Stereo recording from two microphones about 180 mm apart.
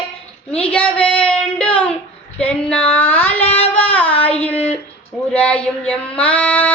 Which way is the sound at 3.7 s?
10° left (ahead or behind).